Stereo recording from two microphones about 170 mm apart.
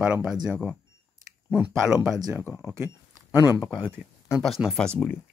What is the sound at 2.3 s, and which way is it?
Speech, 15° left (ahead or behind).